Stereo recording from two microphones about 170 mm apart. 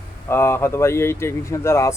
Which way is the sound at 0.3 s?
15° left (ahead or behind).